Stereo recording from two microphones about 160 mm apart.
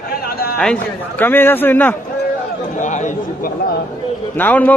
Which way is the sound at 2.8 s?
50° left (ahead or behind).